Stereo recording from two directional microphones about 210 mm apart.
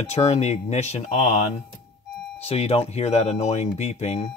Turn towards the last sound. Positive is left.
turn(degrees=30)  # may be behind; listen again after turning